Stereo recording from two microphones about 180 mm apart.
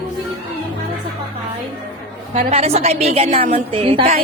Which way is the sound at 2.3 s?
35° right (ahead or behind).